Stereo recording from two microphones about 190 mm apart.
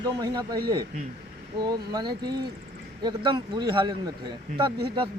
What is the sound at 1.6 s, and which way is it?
Speech, 20° right (ahead or behind).